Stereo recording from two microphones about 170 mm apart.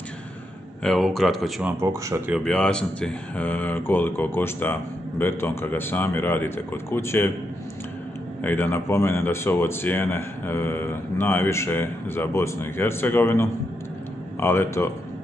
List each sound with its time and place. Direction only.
0.8 s speech: centre (ahead or behind)
1.7 s speech: 15° right (ahead or behind)
2.3 s speech: 5° left (ahead or behind)
8.4 s speech: 10° left (ahead or behind)